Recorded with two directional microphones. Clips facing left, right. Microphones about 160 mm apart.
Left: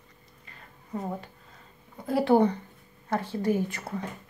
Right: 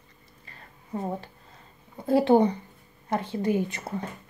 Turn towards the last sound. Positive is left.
turn(degrees=-20)  # may be behind; listen again after turning